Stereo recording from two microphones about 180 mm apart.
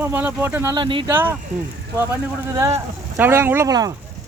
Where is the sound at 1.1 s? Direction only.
10° right (ahead or behind).